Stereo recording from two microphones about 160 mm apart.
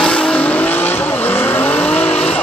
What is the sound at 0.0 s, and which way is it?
Vehicle, 5° left (ahead or behind).